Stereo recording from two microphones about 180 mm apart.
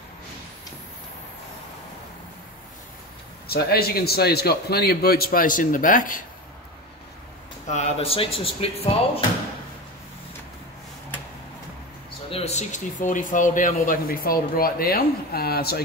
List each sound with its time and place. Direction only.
3.4 s a man's voice: 60° left (ahead or behind)
7.6 s speech: 40° left (ahead or behind)
12.3 s speech: 35° left (ahead or behind); by 15.8 s 60° left (ahead or behind)